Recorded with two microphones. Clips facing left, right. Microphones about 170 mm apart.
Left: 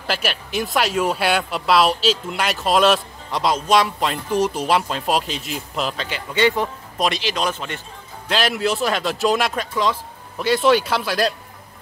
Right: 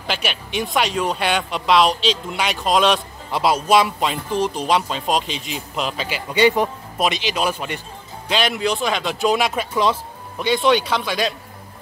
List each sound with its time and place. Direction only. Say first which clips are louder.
0.0 s speech: left 1 dB; centre (ahead or behind)
6.0 s speech: right 3 dB; 10° right (ahead or behind)
7.0 s speech: right 1 dB; centre (ahead or behind)
8.3 s speech: even; centre (ahead or behind)